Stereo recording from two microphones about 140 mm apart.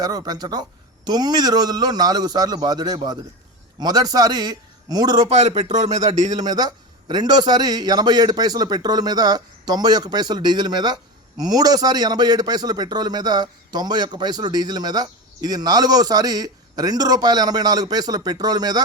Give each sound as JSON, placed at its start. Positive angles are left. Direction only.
{"t": 0.0, "sound": "a man's voice", "side_deg": -30}
{"t": 5.3, "sound": "speech", "side_deg": -50}
{"t": 6.3, "sound": "a man's voice", "side_deg": -30}